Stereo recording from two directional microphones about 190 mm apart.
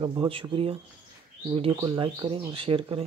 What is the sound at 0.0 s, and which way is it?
Speech, 25° right (ahead or behind).